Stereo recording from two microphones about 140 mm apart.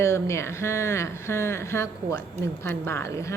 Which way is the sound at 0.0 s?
20° left (ahead or behind).